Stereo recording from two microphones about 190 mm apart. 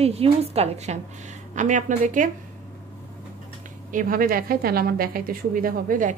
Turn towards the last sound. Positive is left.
turn(degrees=-45)  # may be behind; listen again after turning